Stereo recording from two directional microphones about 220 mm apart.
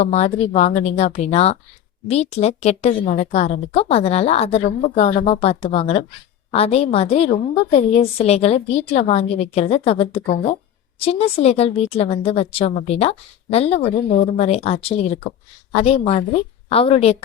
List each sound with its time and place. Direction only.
0.0 s a woman's voice: 30° left (ahead or behind)